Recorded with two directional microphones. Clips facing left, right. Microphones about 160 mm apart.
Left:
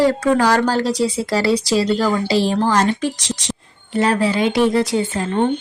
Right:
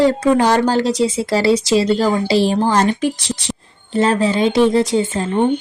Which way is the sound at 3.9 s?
25° right (ahead or behind).